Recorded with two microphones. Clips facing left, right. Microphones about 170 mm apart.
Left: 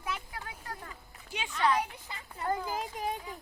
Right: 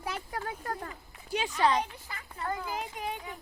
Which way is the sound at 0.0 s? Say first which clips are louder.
Right 3 dB; 40° right (ahead or behind).